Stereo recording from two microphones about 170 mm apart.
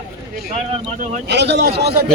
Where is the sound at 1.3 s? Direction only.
85° right.